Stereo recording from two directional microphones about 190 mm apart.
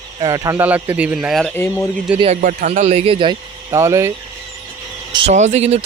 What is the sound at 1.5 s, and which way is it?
Speech, 10° left (ahead or behind).